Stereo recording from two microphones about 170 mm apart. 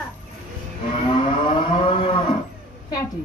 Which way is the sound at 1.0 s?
30° left (ahead or behind).